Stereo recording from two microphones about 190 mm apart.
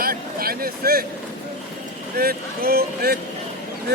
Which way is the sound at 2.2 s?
50° right (ahead or behind).